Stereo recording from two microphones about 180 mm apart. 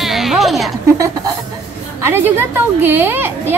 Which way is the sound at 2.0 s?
10° right (ahead or behind).